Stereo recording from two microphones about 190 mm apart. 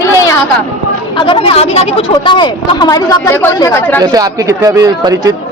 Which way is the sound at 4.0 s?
20° right (ahead or behind).